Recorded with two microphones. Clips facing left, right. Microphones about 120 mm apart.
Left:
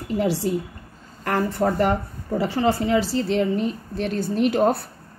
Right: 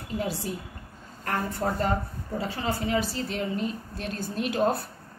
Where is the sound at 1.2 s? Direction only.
75° left (ahead or behind).